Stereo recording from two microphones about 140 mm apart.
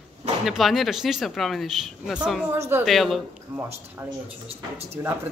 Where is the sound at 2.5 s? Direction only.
15° right (ahead or behind).